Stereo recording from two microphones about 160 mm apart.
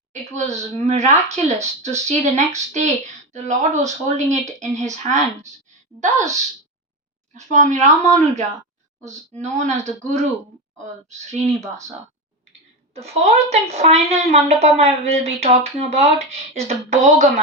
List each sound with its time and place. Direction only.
0.1 s speech: 45° right (ahead or behind)
12.9 s a woman's voice: 40° right (ahead or behind)